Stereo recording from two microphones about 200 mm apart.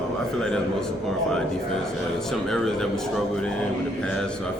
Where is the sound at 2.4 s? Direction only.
Centre (ahead or behind).